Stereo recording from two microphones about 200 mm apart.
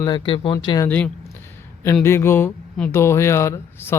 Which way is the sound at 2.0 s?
10° left (ahead or behind).